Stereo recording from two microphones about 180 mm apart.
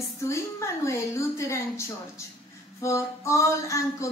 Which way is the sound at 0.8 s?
15° left (ahead or behind).